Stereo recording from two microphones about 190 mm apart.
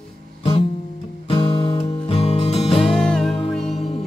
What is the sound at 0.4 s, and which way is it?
Music, 30° left (ahead or behind).